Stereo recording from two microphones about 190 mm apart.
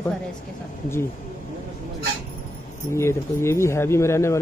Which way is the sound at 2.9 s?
15° left (ahead or behind).